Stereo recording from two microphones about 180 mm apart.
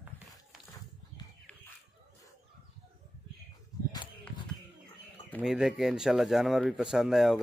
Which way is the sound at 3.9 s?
25° left (ahead or behind).